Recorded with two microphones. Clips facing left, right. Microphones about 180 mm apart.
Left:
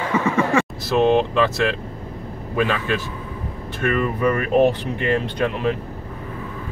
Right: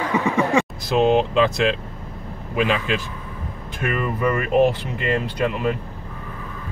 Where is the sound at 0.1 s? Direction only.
15° right (ahead or behind).